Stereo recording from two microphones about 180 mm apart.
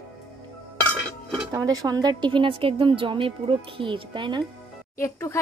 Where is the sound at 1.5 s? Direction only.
20° right (ahead or behind).